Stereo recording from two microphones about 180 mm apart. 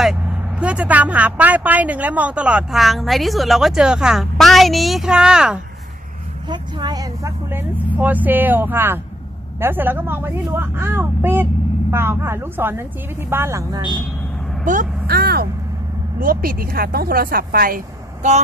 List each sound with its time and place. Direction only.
0.0 s speech: 5° right (ahead or behind)
6.5 s speech: 25° right (ahead or behind)
14.6 s speech: 45° right (ahead or behind)